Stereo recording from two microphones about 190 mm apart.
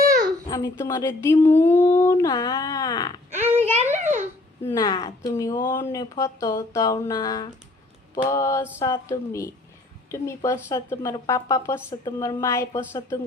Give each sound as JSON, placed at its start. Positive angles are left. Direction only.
{"t": 0.4, "sound": "a woman's voice", "side_deg": 15}
{"t": 3.3, "sound": "a sound", "side_deg": -10}
{"t": 3.9, "sound": "babbling", "side_deg": -40}
{"t": 4.6, "sound": "a woman's voice", "side_deg": 20}